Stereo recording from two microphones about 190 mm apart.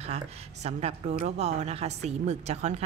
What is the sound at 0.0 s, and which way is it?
Speech, 35° right (ahead or behind).